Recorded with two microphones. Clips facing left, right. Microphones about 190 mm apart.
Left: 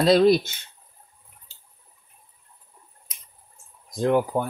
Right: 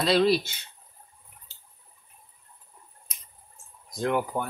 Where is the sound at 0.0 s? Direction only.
45° left (ahead or behind).